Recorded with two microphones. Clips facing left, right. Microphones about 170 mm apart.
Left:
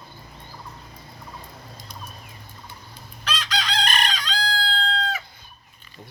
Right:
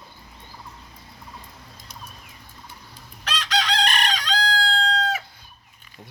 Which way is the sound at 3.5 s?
70° right (ahead or behind).